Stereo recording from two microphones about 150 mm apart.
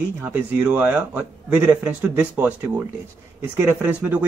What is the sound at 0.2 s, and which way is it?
Speech, 10° right (ahead or behind).